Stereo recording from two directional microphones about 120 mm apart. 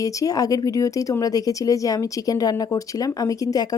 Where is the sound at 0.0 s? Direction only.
30° left (ahead or behind).